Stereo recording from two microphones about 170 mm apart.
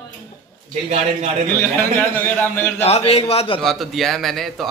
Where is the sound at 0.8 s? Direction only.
40° right (ahead or behind).